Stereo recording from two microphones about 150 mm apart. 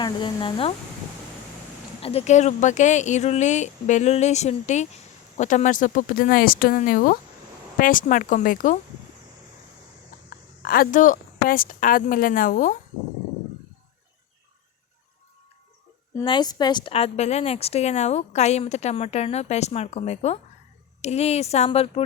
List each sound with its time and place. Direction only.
0.0 s speech: 30° left (ahead or behind)
2.0 s a woman's voice: 40° left (ahead or behind); by 8.8 s 65° left (ahead or behind)
10.2 s a woman's voice: 75° left (ahead or behind)
16.2 s a woman's voice: 30° left (ahead or behind)